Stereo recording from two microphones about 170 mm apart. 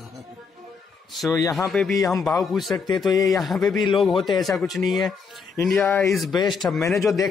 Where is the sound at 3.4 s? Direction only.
Centre (ahead or behind).